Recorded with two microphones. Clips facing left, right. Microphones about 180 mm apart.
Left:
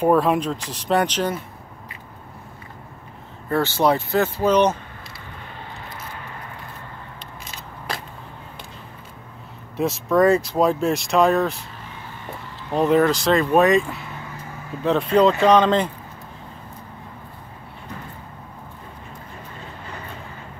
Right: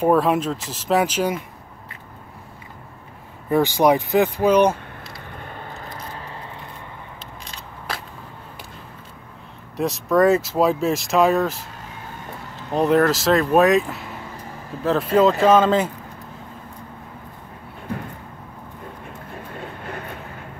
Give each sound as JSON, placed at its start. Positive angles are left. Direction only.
{"t": 0.0, "sound": "speech", "side_deg": 0}
{"t": 3.4, "sound": "speech", "side_deg": -15}
{"t": 5.3, "sound": "a sound", "side_deg": -50}
{"t": 7.4, "sound": "a sound", "side_deg": 0}
{"t": 9.8, "sound": "speech", "side_deg": 0}
{"t": 12.7, "sound": "speech", "side_deg": 0}
{"t": 19.5, "sound": "vehicle", "side_deg": -55}